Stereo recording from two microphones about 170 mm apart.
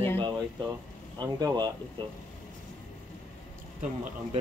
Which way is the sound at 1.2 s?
25° right (ahead or behind).